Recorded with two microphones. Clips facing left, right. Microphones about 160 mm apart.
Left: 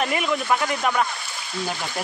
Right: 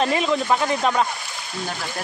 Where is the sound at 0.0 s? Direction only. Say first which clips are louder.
Right 3 dB; 25° right (ahead or behind).